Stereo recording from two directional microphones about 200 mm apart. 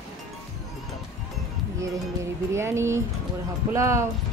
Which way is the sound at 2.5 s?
15° right (ahead or behind).